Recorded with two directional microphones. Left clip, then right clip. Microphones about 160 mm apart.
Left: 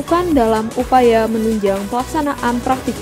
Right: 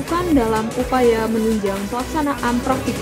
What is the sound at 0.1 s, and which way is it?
Speech, 45° left (ahead or behind).